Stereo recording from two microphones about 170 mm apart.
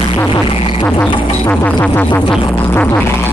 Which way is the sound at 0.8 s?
10° left (ahead or behind).